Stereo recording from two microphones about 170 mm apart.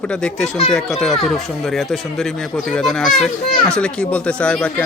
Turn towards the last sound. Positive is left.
turn(degrees=5)  # may be behind; listen again after turning